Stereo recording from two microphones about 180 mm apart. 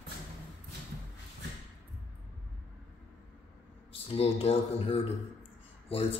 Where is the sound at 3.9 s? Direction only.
30° left (ahead or behind).